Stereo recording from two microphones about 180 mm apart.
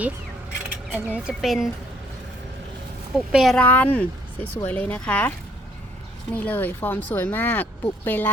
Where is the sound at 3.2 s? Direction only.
Centre (ahead or behind).